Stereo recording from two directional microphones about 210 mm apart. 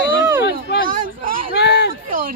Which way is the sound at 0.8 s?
40° right (ahead or behind).